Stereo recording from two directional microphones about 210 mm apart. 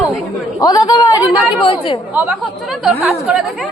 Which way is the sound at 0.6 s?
20° left (ahead or behind).